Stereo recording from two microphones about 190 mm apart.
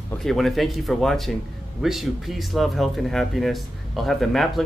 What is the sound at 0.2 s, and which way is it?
Speech, centre (ahead or behind).